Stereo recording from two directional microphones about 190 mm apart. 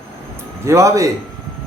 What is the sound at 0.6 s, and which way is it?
Speech, 15° right (ahead or behind).